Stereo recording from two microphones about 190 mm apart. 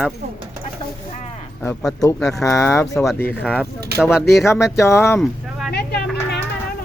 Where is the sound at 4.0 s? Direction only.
Centre (ahead or behind).